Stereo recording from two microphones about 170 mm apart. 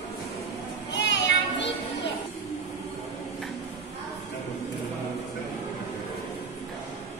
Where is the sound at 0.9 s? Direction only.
90° left.